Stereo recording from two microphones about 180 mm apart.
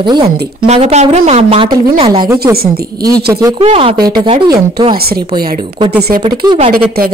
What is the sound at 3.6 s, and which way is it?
A woman's voice, 35° right (ahead or behind).